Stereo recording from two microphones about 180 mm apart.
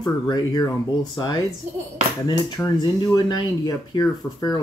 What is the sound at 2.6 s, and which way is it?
Speech, 25° left (ahead or behind).